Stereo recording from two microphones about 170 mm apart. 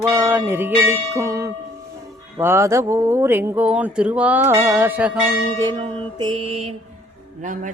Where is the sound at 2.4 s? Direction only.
15° right (ahead or behind).